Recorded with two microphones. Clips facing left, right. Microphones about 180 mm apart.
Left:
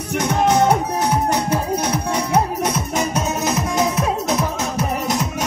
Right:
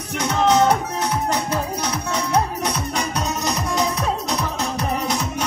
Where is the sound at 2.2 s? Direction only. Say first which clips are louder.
Left 1 dB; 10° left (ahead or behind).